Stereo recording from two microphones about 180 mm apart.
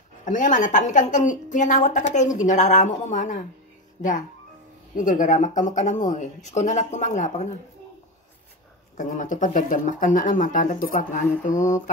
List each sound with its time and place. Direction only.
0.2 s a woman's voice: 45° left (ahead or behind)
4.9 s a woman's voice: 45° left (ahead or behind)
8.9 s a woman's voice: 45° left (ahead or behind)